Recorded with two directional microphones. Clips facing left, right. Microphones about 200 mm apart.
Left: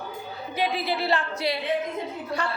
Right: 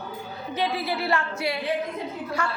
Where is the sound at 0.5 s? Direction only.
15° left (ahead or behind).